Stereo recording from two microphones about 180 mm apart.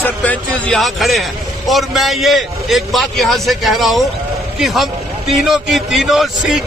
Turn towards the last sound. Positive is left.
turn(degrees=0)  # may be behind; listen again after turning